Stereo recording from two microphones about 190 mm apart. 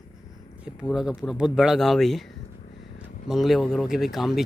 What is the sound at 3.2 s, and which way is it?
Speech, centre (ahead or behind).